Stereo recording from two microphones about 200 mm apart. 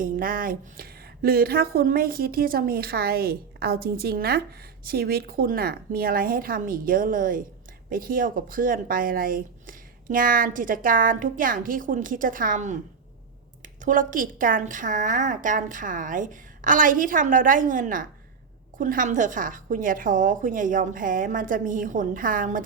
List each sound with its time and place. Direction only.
0.0 s speech: 45° right (ahead or behind)
13.8 s a woman's voice: 40° right (ahead or behind)